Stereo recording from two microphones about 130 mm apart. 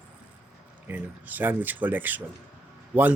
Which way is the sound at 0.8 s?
15° right (ahead or behind).